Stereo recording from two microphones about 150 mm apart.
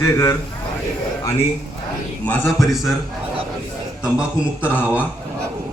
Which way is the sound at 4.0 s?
5° right (ahead or behind).